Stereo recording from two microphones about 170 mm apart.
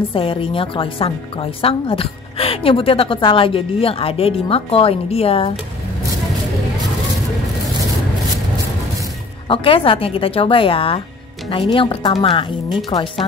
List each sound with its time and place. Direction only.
0.1 s a woman's voice: 30° left (ahead or behind)
9.5 s a woman's voice: 30° left (ahead or behind)
12.9 s speech: 20° left (ahead or behind)